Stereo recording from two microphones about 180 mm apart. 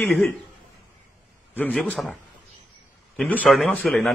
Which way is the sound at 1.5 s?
5° left (ahead or behind).